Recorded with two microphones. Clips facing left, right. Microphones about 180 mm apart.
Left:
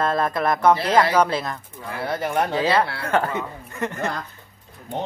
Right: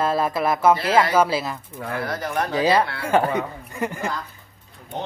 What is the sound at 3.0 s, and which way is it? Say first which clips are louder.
Speech: right 3 dB; 10° right (ahead or behind).